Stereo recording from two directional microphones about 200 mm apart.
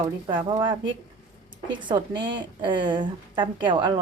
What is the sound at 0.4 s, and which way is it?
A woman's voice, 25° right (ahead or behind).